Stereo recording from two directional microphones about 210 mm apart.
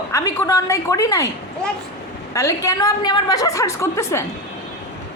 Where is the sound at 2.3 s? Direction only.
15° left (ahead or behind).